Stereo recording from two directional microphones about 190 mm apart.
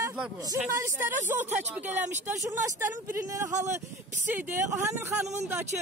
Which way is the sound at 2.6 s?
10° right (ahead or behind).